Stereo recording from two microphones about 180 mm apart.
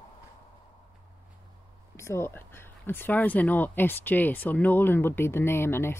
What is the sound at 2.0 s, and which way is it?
Speech, 15° left (ahead or behind).